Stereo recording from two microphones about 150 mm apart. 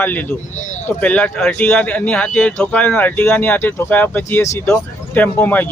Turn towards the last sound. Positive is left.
turn(degrees=10)  # may be behind; listen again after turning